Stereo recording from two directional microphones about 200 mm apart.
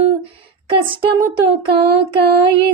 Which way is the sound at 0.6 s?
25° right (ahead or behind).